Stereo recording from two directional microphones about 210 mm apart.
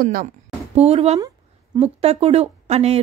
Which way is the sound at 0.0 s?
40° right (ahead or behind).